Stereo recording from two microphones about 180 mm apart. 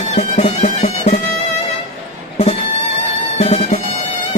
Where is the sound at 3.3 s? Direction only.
35° left (ahead or behind).